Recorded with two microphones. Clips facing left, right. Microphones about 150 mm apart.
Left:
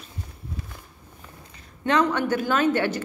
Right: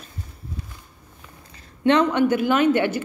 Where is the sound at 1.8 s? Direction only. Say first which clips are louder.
Right 4 dB; 25° right (ahead or behind).